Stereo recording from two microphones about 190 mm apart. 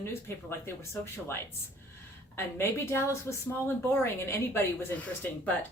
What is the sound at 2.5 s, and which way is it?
Speech, 15° left (ahead or behind).